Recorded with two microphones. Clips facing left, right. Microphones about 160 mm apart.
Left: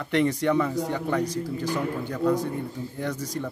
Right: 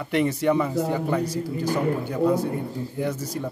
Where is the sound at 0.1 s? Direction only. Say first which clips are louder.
Right 1 dB; 10° right (ahead or behind).